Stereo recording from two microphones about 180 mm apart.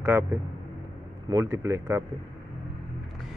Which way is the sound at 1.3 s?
15° right (ahead or behind).